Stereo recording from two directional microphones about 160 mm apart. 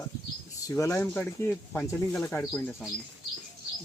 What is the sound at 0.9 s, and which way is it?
Speech, 10° left (ahead or behind).